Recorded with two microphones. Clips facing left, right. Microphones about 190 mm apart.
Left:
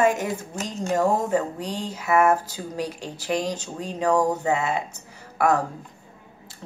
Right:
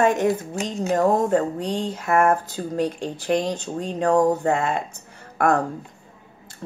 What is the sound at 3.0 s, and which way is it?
Speech, 55° right (ahead or behind).